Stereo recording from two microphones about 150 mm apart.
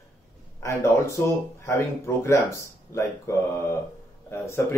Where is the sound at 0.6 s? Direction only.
20° left (ahead or behind).